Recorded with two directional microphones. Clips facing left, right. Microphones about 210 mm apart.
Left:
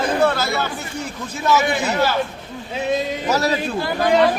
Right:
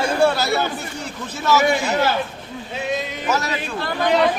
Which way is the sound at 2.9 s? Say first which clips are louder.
Left 3 dB; 35° left (ahead or behind).